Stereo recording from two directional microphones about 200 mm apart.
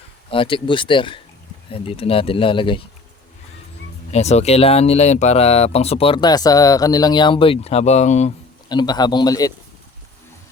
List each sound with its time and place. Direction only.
0.3 s speech: 25° left (ahead or behind)
4.1 s speech: 35° left (ahead or behind)
8.7 s speech: 20° left (ahead or behind)